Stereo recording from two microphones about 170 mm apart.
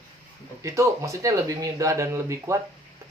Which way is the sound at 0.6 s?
20° right (ahead or behind).